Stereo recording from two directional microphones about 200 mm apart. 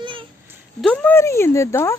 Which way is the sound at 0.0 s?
25° right (ahead or behind).